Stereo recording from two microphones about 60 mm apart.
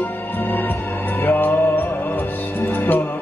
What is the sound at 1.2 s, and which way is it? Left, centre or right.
Music, left.